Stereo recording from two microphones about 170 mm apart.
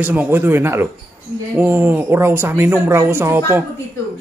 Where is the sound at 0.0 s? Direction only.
10° right (ahead or behind).